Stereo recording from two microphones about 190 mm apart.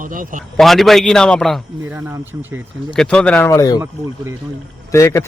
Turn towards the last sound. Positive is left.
turn(degrees=15)  # may be behind; listen again after turning